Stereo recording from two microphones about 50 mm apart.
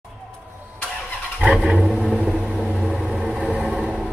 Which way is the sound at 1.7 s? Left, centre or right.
Centre.